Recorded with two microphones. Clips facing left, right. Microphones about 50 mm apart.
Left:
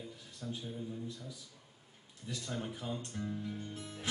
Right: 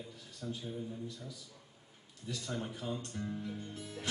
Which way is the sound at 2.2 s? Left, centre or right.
Centre.